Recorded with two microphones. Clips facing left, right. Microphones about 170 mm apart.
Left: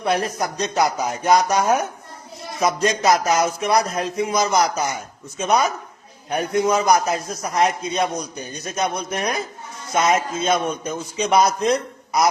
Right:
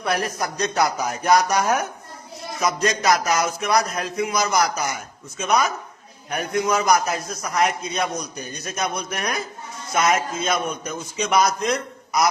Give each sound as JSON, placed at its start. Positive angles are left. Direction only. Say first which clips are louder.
{"t": 0.0, "sound": "a man's voice", "louder": "left 3 dB", "side_deg": 20}
{"t": 2.8, "sound": "a man's voice", "louder": "left 2 dB", "side_deg": 30}